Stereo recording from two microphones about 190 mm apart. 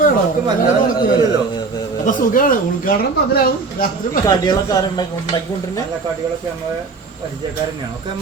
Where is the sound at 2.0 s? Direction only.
45° left (ahead or behind).